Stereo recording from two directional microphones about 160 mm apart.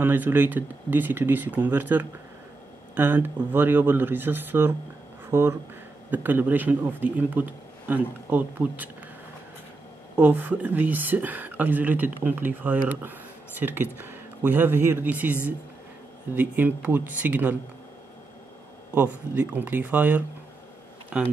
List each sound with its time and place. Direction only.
0.0 s speech: 10° right (ahead or behind)
10.1 s speech: 10° right (ahead or behind)
16.3 s speech: 10° right (ahead or behind)
18.9 s speech: 10° right (ahead or behind)